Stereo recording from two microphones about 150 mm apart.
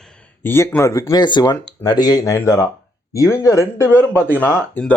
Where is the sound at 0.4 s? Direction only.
15° left (ahead or behind).